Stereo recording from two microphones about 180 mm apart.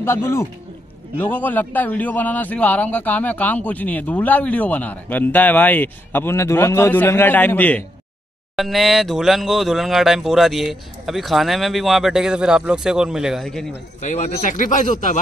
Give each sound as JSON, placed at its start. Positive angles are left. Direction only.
{"t": 0.0, "sound": "a man's voice", "side_deg": 15}
{"t": 14.0, "sound": "speech", "side_deg": 40}